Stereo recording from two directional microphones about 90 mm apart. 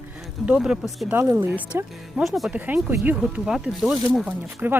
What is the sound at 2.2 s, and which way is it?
Speech, centre (ahead or behind).